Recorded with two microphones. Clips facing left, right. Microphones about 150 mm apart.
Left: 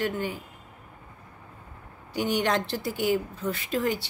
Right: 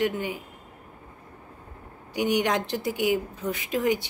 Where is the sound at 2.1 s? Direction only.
15° right (ahead or behind).